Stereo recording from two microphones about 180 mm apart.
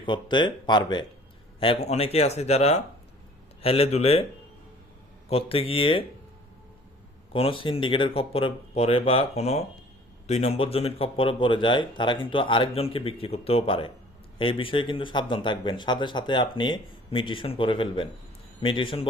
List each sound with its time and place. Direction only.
0.0 s speech: 25° left (ahead or behind)
5.3 s speech: 30° left (ahead or behind)
7.3 s speech: 30° left (ahead or behind)